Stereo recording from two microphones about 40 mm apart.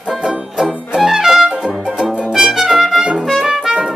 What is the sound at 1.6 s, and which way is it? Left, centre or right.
Music, centre.